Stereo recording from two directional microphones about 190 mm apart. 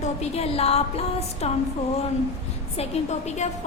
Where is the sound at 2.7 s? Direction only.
35° left (ahead or behind).